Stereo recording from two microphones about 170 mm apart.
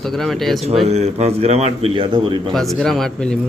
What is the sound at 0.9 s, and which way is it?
A man's voice, 40° right (ahead or behind).